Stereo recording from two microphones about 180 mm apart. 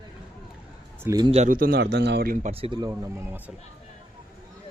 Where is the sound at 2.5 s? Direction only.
30° right (ahead or behind).